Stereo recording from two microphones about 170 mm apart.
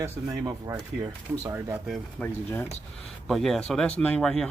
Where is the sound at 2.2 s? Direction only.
10° left (ahead or behind).